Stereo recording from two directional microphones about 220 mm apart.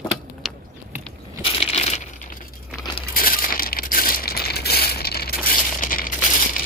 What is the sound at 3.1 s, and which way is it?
Crushing, 40° left (ahead or behind).